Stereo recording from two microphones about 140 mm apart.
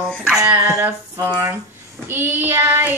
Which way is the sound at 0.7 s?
25° right (ahead or behind).